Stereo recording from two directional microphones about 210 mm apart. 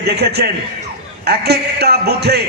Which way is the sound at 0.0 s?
50° right (ahead or behind).